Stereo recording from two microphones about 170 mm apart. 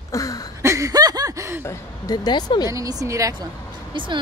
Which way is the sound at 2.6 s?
20° right (ahead or behind).